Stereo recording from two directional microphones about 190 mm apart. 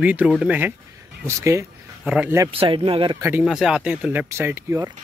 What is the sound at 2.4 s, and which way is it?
Speech, 25° right (ahead or behind).